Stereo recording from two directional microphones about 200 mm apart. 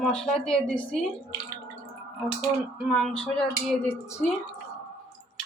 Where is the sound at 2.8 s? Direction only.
Centre (ahead or behind).